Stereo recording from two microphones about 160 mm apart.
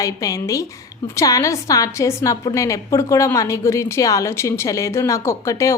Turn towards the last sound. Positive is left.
turn(degrees=20)  # may be behind; listen again after turning